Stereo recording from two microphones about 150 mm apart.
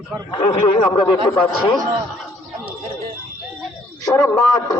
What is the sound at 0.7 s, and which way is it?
Speech, 35° left (ahead or behind).